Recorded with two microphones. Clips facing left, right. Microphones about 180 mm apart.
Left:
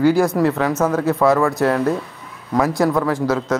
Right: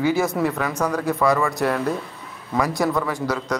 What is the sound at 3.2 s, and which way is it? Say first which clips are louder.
Speech: left 5 dB; centre (ahead or behind).